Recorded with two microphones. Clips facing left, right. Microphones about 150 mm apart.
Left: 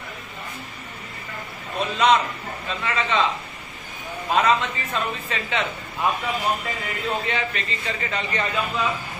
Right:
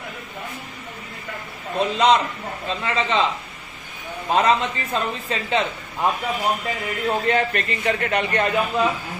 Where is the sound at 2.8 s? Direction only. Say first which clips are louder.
Right 2 dB; 30° right (ahead or behind).